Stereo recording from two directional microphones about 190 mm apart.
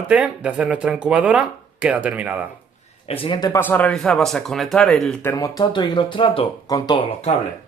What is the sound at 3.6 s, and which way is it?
Speech, 5° left (ahead or behind).